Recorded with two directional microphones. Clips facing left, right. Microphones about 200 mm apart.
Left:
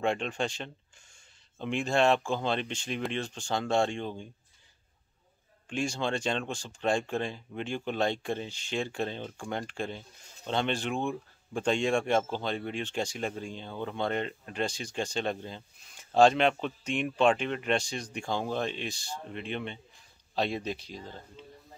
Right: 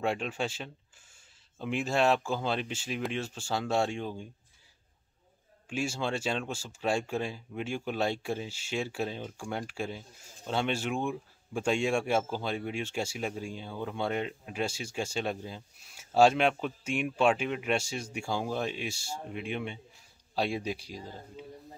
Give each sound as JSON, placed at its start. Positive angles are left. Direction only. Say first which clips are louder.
{"t": 0.0, "sound": "speech", "louder": "left 1 dB", "side_deg": -5}
{"t": 5.7, "sound": "speech", "louder": "left 1 dB", "side_deg": -5}